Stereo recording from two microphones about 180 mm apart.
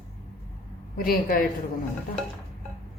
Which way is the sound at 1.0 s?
55° left (ahead or behind).